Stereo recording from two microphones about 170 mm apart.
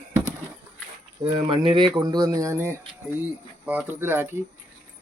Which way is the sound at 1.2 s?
30° right (ahead or behind).